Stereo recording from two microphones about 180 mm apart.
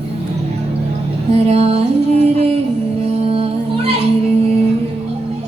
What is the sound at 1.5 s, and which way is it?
Music, 35° right (ahead or behind).